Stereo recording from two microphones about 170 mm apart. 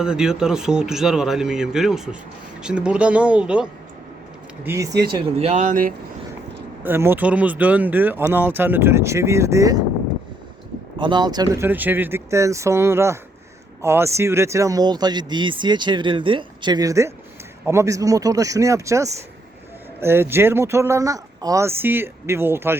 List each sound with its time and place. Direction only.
0.0 s a man's voice: 5° right (ahead or behind)
4.6 s speech: 15° right (ahead or behind)
5.0 s speech: 40° right (ahead or behind)
6.8 s speech: 15° right (ahead or behind)
10.9 s speech: 25° right (ahead or behind)